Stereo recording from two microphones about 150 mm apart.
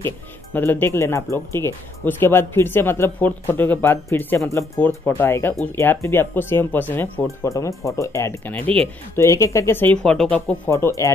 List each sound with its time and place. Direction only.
0.0 s speech: 15° left (ahead or behind)